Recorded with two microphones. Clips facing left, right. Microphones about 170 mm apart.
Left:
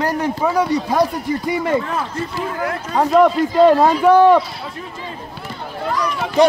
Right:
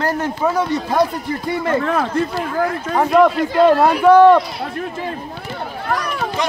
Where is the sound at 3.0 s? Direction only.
Centre (ahead or behind).